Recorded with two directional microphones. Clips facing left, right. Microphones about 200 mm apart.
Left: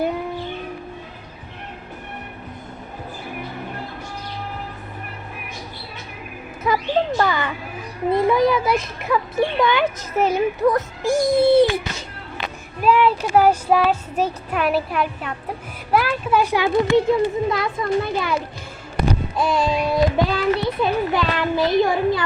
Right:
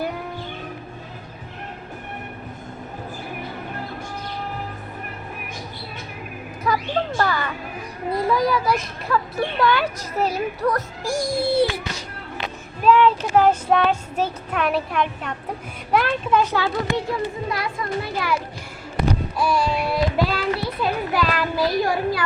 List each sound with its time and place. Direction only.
6.7 s a sound: 20° left (ahead or behind)
8.1 s a child's voice: 25° left (ahead or behind)
12.8 s child singing: 10° left (ahead or behind)
15.9 s speech: 5° left (ahead or behind)
17.1 s a child's voice: 20° left (ahead or behind)
19.4 s a child's voice: 20° left (ahead or behind)